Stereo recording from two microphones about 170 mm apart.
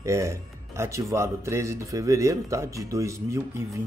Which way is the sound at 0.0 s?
15° right (ahead or behind).